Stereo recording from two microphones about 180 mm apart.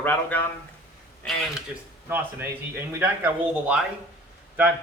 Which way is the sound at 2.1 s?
10° right (ahead or behind).